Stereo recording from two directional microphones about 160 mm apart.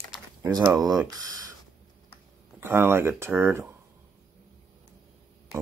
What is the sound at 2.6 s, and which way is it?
Speech, 15° right (ahead or behind).